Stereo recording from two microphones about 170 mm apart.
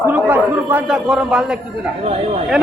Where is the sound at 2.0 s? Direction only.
40° right (ahead or behind).